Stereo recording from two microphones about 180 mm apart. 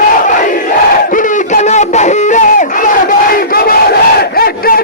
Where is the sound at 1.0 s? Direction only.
45° left (ahead or behind).